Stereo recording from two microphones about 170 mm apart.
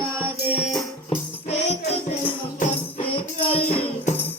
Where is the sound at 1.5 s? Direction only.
40° left (ahead or behind).